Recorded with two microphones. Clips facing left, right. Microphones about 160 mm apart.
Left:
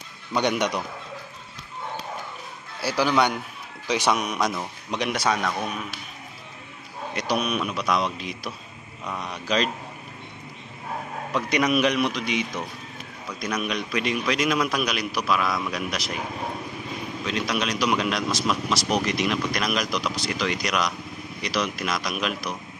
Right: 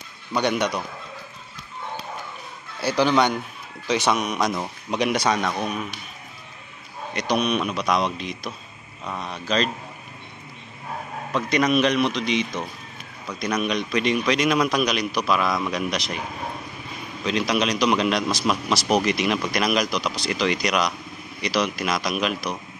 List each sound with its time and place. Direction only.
0.4 s a man's voice: 15° left (ahead or behind)
2.8 s a man's voice: 5° left (ahead or behind)
5.4 s a man's voice: 15° right (ahead or behind)
7.2 s a man's voice: 5° left (ahead or behind)
11.3 s a man's voice: 10° left (ahead or behind)
17.2 s a man's voice: centre (ahead or behind)